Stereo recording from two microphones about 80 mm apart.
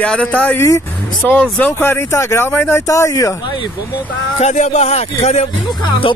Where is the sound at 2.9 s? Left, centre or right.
Left.